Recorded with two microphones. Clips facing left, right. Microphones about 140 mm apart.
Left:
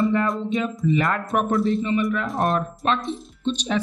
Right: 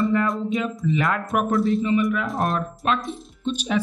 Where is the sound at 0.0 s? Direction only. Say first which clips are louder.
Even; centre (ahead or behind).